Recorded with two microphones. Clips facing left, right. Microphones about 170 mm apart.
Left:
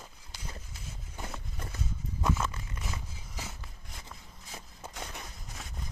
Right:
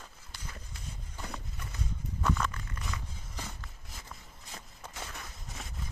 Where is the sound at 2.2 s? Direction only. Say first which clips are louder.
Even; 15° left (ahead or behind).